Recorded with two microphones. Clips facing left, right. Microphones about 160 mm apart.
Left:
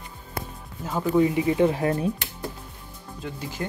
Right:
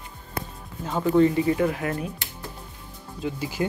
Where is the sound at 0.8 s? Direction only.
5° left (ahead or behind); by 2.1 s 30° left (ahead or behind).